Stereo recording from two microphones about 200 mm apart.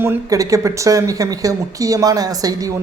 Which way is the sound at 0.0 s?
15° right (ahead or behind).